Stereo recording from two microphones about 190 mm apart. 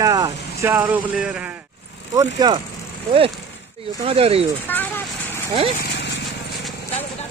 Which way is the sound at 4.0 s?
30° right (ahead or behind).